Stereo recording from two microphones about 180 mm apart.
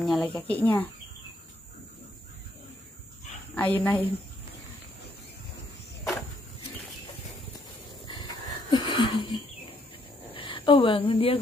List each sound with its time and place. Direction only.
0.0 s speech: 5° left (ahead or behind)
3.5 s speech: 10° left (ahead or behind)
8.1 s dog: 25° left (ahead or behind)
10.3 s a woman's voice: 30° left (ahead or behind)